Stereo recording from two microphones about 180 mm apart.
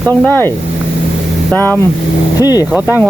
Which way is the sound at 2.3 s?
20° left (ahead or behind).